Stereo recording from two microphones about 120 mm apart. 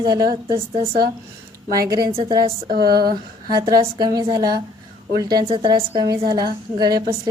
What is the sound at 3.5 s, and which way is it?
A woman's voice, 35° right (ahead or behind).